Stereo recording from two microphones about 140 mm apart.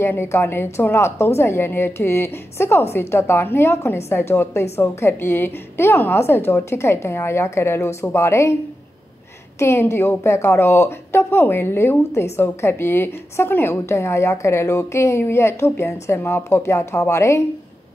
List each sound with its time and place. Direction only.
0.0 s a woman's voice: 20° left (ahead or behind)
9.6 s a woman's voice: 20° left (ahead or behind)